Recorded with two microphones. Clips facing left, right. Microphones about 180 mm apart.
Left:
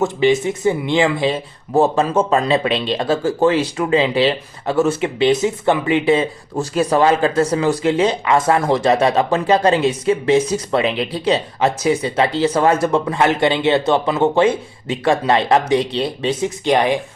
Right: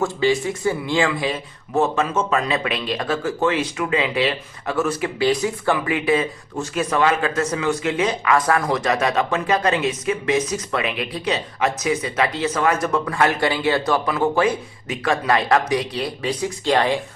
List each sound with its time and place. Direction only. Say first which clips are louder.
0.0 s speech: left 4 dB; 20° left (ahead or behind)